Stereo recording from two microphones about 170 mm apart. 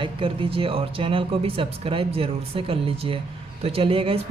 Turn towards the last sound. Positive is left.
turn(degrees=-35)  # may be behind; listen again after turning